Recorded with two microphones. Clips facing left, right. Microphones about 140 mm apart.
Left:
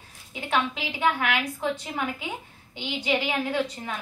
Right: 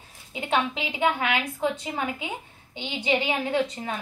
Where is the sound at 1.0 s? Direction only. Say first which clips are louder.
Even; 20° right (ahead or behind).